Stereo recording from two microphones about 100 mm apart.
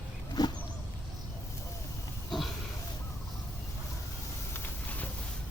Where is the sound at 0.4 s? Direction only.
40° left (ahead or behind).